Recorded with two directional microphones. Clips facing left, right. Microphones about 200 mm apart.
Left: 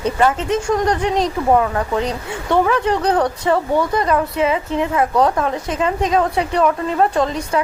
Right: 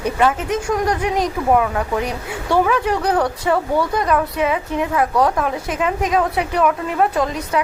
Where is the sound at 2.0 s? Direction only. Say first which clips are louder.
Left 2 dB; 20° left (ahead or behind).